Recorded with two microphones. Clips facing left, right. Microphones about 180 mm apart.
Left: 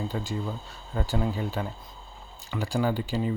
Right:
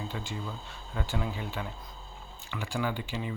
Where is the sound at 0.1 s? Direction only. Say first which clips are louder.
Left 6 dB; 40° left (ahead or behind).